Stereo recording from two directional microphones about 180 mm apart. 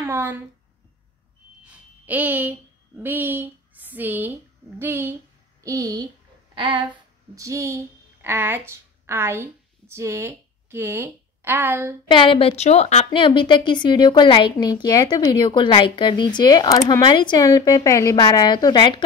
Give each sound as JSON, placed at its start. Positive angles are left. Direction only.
{"t": 0.0, "sound": "speech", "side_deg": -10}
{"t": 1.6, "sound": "a sound", "side_deg": -10}
{"t": 3.0, "sound": "speech", "side_deg": -10}
{"t": 12.1, "sound": "a woman's voice", "side_deg": 25}